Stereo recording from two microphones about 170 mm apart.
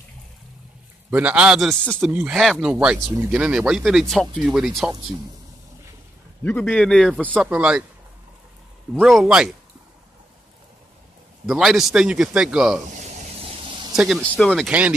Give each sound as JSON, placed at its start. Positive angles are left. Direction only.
{"t": 1.1, "sound": "a man's voice", "side_deg": -5}
{"t": 6.4, "sound": "speech", "side_deg": 10}
{"t": 7.4, "sound": "speech", "side_deg": -5}
{"t": 9.0, "sound": "a man's voice", "side_deg": 0}
{"t": 11.4, "sound": "a man's voice", "side_deg": 0}
{"t": 12.9, "sound": "a sound", "side_deg": -45}
{"t": 13.9, "sound": "a man's voice", "side_deg": -5}
{"t": 14.7, "sound": "speech", "side_deg": -5}